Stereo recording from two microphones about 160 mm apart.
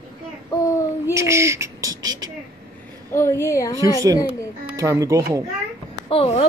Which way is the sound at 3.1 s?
15° left (ahead or behind).